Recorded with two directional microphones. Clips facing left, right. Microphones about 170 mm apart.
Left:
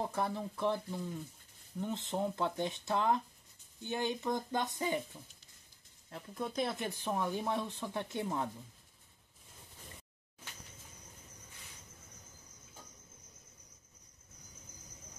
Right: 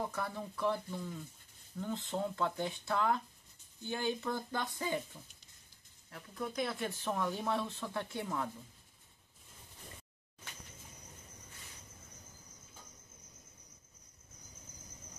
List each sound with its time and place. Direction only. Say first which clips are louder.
0.1 s speech: left 4 dB; 25° left (ahead or behind)
6.0 s speech: left 1 dB; 25° left (ahead or behind)